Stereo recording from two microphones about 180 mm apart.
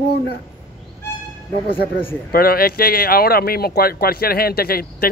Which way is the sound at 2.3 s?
55° left (ahead or behind).